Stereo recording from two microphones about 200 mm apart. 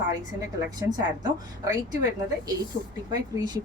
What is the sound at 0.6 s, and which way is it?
A woman's voice, 20° right (ahead or behind).